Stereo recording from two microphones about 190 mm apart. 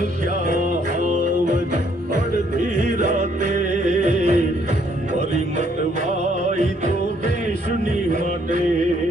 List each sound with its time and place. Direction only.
3.2 s music: 40° right (ahead or behind)